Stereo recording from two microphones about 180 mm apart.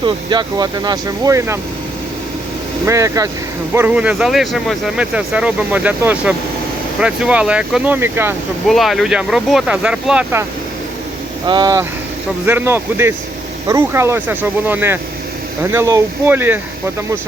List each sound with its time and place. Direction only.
0.0 s speech: 25° right (ahead or behind)
2.8 s speech: 15° right (ahead or behind)
8.6 s speech: centre (ahead or behind)
11.4 s speech: 25° right (ahead or behind)